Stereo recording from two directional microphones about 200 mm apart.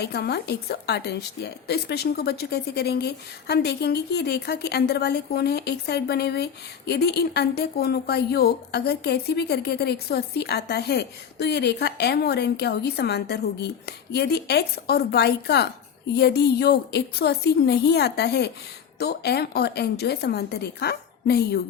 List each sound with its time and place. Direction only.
0.0 s a woman's voice: 55° left (ahead or behind)